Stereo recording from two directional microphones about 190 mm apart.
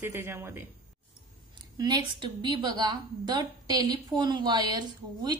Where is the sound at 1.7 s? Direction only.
25° right (ahead or behind).